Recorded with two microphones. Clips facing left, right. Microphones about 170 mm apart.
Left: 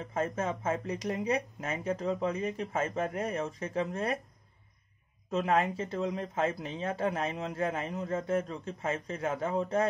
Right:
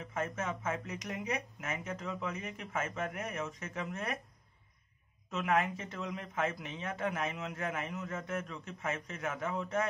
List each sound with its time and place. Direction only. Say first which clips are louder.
0.0 s speech: left 5 dB; 30° left (ahead or behind)
5.3 s speech: left 4 dB; 30° left (ahead or behind)